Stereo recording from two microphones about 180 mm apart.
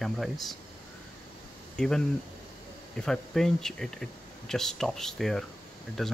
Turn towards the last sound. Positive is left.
turn(degrees=0)  # may be behind; listen again after turning